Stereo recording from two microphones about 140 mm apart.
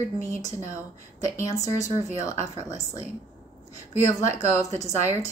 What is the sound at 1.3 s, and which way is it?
A woman's voice, 20° left (ahead or behind).